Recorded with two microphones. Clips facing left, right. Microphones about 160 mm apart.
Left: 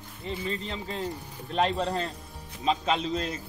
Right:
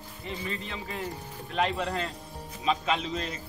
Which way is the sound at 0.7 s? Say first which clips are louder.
Left 2 dB; 25° left (ahead or behind).